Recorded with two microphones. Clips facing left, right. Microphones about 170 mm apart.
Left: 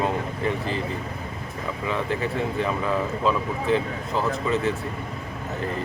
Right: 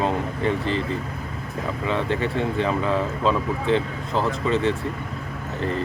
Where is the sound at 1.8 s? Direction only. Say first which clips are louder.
Right 2 dB; centre (ahead or behind).